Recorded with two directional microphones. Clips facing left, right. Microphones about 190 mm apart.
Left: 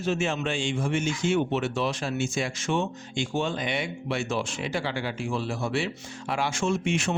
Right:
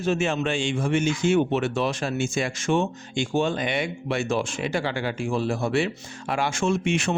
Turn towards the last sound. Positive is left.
turn(degrees=-65)  # may be behind; listen again after turning